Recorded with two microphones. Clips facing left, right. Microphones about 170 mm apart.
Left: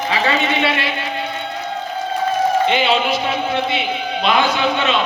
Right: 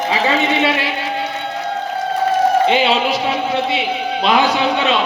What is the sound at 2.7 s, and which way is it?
Speech, 35° right (ahead or behind).